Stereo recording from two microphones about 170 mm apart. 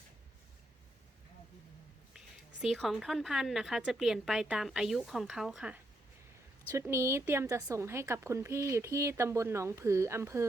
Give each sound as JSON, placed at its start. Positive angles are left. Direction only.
{"t": 2.6, "sound": "a woman's voice", "side_deg": 0}